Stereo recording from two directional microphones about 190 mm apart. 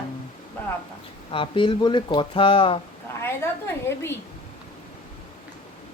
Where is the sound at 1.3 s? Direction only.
25° left (ahead or behind).